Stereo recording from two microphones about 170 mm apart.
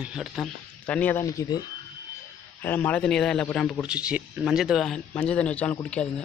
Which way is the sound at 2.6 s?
10° left (ahead or behind).